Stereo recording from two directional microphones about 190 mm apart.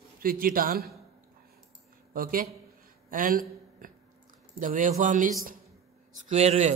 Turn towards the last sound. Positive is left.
turn(degrees=-35)  # may be behind; listen again after turning